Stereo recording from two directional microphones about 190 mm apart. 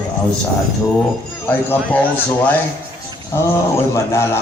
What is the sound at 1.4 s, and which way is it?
Speech, 10° left (ahead or behind).